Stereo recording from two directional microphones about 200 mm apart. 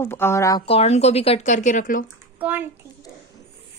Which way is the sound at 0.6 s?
30° left (ahead or behind).